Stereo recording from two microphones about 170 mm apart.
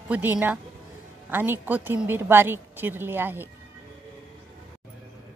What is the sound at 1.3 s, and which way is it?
A woman's voice, 10° right (ahead or behind).